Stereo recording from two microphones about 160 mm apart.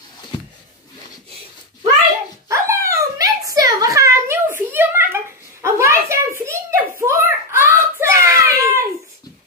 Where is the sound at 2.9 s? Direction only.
20° right (ahead or behind).